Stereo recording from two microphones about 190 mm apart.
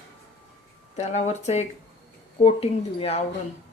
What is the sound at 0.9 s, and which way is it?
Speech, 35° left (ahead or behind).